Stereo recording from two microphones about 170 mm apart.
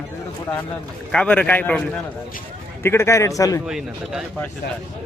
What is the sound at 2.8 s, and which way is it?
Speech, 15° left (ahead or behind).